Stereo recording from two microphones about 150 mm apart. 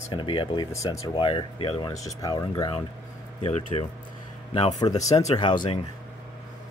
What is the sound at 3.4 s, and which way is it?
A man's voice, 45° left (ahead or behind).